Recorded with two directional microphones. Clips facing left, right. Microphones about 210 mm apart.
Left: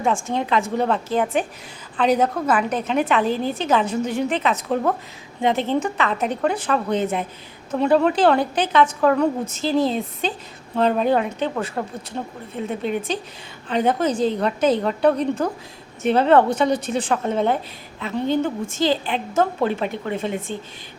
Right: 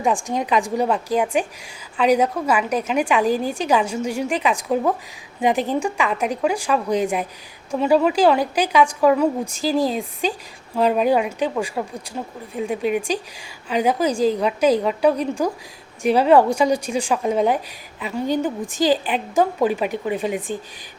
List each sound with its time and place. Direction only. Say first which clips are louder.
0.0 s a woman's voice: right 1 dB; 15° right (ahead or behind)